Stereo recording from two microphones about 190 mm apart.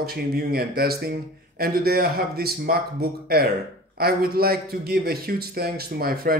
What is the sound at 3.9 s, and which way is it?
A man's voice, 55° right (ahead or behind).